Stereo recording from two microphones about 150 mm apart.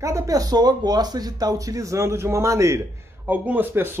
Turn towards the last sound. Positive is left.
turn(degrees=-15)  # may be behind; listen again after turning